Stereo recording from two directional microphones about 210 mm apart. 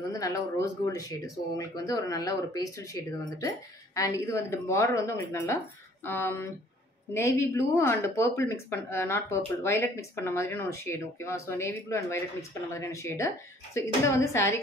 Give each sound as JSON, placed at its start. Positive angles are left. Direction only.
{"t": 0.1, "sound": "speech", "side_deg": 15}